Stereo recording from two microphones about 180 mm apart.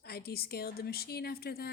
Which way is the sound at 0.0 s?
60° left (ahead or behind).